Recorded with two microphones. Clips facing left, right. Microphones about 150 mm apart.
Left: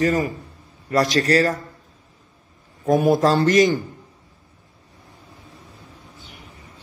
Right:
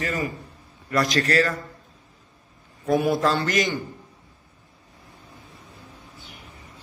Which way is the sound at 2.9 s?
45° left (ahead or behind).